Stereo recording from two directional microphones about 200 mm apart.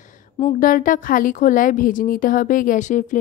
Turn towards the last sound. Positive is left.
turn(degrees=40)  # may be behind; listen again after turning